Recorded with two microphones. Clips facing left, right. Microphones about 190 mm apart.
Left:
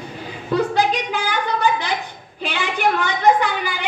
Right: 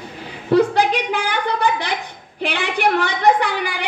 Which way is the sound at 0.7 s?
75° right (ahead or behind).